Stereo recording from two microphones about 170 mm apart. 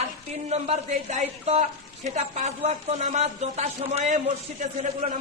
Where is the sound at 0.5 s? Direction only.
40° right (ahead or behind).